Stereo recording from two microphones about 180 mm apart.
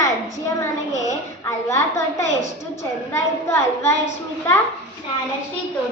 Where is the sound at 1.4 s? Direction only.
15° left (ahead or behind).